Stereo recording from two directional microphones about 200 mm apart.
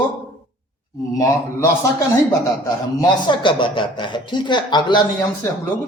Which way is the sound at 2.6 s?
20° left (ahead or behind).